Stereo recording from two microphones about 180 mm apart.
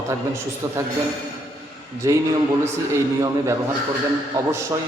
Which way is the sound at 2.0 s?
15° right (ahead or behind).